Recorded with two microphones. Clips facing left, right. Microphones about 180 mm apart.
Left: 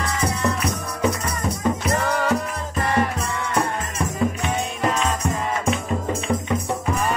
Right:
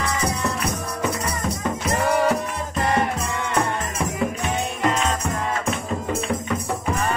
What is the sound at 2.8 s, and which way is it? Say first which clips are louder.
Music: even; 25° right (ahead or behind).